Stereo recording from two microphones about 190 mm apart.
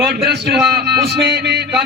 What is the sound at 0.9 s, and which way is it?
Speech, 55° right (ahead or behind).